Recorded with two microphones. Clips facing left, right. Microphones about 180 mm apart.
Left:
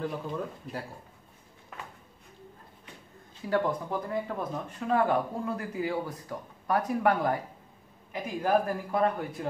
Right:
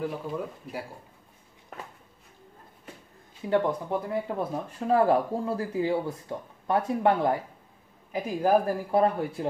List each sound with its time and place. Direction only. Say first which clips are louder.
0.0 s speech: right 2 dB; 5° right (ahead or behind)
3.4 s speech: right 3 dB; 20° right (ahead or behind)
8.4 s speech: right 3 dB; 35° right (ahead or behind)